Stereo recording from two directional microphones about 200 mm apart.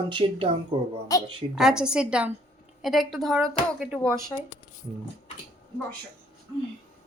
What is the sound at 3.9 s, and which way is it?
Speech, 15° right (ahead or behind).